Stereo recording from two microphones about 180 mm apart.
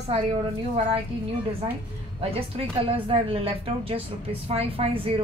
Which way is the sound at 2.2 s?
30° right (ahead or behind).